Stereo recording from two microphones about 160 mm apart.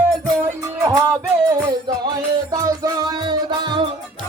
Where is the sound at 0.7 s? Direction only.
25° right (ahead or behind).